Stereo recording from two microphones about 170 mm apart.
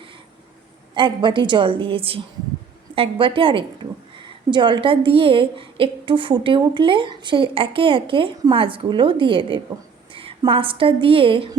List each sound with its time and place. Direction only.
0.9 s a woman's voice: 25° right (ahead or behind)